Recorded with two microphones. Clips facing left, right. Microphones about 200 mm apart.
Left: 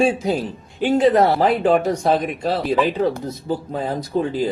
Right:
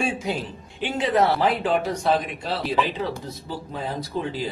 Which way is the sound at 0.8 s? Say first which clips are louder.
Left 7 dB; 45° left (ahead or behind).